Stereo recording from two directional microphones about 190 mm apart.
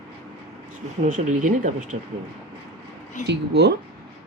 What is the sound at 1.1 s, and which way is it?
Speech, 40° right (ahead or behind).